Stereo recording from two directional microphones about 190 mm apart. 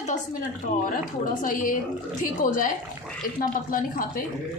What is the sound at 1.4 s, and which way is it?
A woman's voice, 45° left (ahead or behind).